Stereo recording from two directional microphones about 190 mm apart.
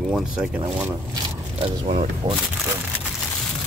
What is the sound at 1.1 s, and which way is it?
Speech, 30° right (ahead or behind).